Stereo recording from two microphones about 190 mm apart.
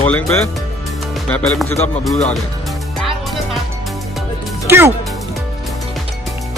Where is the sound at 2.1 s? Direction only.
35° left (ahead or behind).